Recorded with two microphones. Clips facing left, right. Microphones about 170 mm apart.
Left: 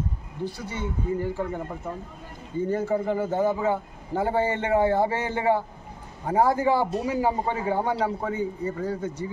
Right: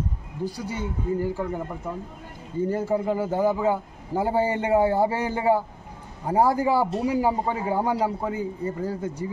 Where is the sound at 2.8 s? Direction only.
10° right (ahead or behind).